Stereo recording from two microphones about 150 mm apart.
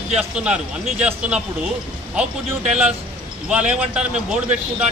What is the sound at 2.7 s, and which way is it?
A man's voice, 5° right (ahead or behind).